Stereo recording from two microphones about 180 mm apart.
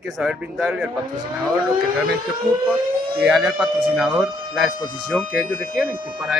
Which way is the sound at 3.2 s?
5° right (ahead or behind).